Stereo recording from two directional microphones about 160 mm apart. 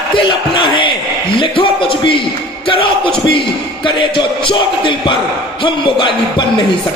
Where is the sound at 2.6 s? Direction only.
35° left (ahead or behind).